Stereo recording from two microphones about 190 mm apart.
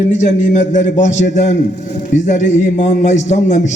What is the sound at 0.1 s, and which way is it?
A man's voice, 40° left (ahead or behind).